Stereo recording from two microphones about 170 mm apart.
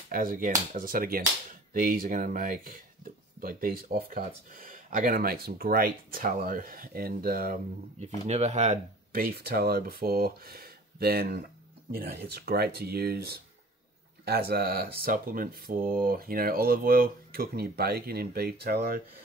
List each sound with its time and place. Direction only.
0.1 s speech: 55° right (ahead or behind)
8.3 s speech: 40° right (ahead or behind)
9.2 s speech: 65° right (ahead or behind)